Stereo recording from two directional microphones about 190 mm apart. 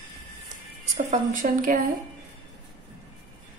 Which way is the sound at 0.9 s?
45° right (ahead or behind).